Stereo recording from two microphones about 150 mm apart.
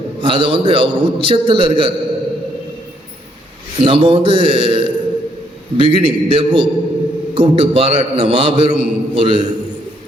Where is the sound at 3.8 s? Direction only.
35° right (ahead or behind).